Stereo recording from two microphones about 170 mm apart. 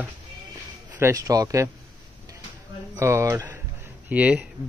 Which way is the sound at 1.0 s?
20° right (ahead or behind).